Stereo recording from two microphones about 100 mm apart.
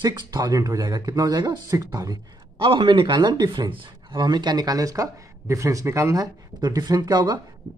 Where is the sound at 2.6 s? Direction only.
60° right (ahead or behind).